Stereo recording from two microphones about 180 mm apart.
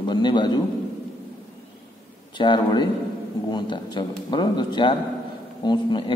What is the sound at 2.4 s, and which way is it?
Speech, 25° left (ahead or behind).